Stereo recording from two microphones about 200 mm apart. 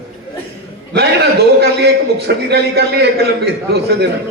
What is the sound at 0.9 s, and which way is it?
A man's voice, 55° right (ahead or behind).